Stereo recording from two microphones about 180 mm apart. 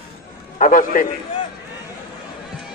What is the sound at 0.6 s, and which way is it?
Speech, 50° left (ahead or behind).